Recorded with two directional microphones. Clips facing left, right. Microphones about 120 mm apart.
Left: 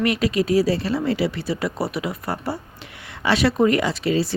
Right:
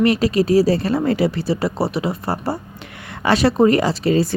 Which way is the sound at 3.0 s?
50° right (ahead or behind).